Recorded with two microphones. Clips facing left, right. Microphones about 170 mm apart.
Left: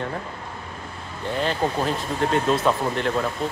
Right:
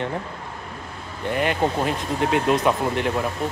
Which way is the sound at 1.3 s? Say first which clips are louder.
Right 2 dB; 15° right (ahead or behind).